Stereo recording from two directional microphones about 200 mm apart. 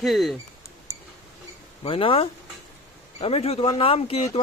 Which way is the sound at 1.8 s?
25° left (ahead or behind).